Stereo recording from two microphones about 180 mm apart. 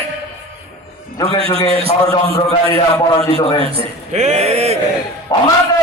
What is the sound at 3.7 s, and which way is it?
A man's voice, 40° right (ahead or behind).